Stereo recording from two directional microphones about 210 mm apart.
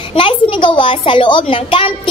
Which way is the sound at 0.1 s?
25° left (ahead or behind).